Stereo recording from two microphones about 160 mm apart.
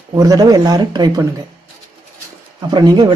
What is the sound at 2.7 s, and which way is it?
Speech, 25° right (ahead or behind).